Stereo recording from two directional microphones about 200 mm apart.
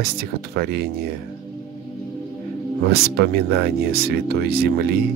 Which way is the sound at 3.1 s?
55° right (ahead or behind).